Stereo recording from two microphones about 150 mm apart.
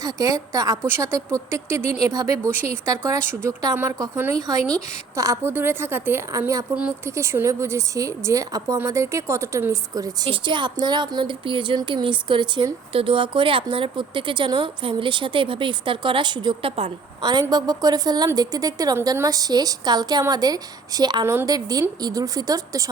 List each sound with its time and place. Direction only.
0.0 s a woman's voice: 25° right (ahead or behind); by 16.9 s 40° right (ahead or behind)
17.5 s a woman's voice: 25° right (ahead or behind)